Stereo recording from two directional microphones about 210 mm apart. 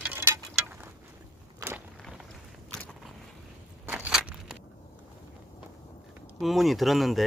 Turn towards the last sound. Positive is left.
turn(degrees=0)  # may be behind; listen again after turning